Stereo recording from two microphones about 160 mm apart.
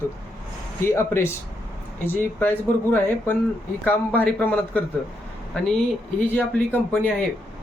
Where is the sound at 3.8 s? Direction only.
10° left (ahead or behind).